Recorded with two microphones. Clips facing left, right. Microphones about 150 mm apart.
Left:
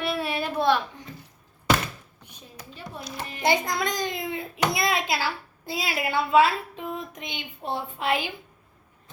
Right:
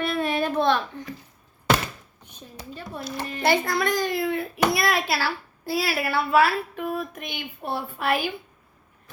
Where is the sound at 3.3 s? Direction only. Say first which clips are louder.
Right 2 dB; 15° left (ahead or behind).